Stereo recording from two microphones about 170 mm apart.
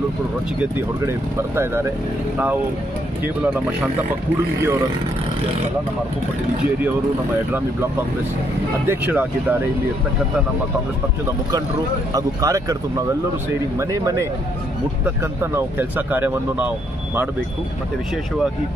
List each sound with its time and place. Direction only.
1.0 s speech: 15° right (ahead or behind)
8.8 s speech: 10° right (ahead or behind)
12.1 s speech: 20° right (ahead or behind)
13.7 s speech: 15° right (ahead or behind)